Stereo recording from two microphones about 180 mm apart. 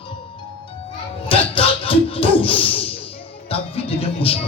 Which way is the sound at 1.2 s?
30° left (ahead or behind).